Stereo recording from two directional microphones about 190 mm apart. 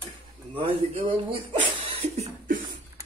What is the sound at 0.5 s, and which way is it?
Speech, 30° right (ahead or behind).